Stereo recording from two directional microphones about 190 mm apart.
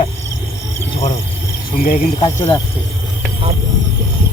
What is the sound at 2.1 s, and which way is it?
Speech, 25° left (ahead or behind).